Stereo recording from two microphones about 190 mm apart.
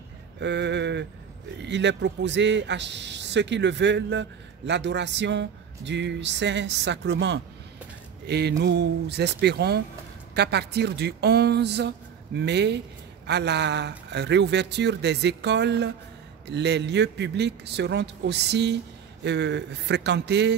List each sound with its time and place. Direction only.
0.4 s a man's voice: 65° right (ahead or behind)